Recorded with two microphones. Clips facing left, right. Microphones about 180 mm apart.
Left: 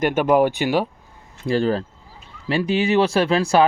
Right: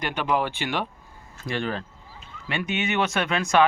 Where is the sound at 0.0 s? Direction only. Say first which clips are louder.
Left 9 dB; 45° left (ahead or behind).